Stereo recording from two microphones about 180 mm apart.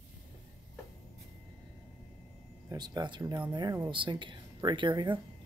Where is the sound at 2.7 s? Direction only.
20° right (ahead or behind).